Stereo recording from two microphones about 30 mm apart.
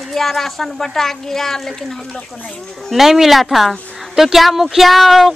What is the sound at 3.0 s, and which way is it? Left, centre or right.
Speech, centre.